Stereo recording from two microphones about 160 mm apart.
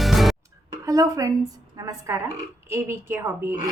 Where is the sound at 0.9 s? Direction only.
20° right (ahead or behind).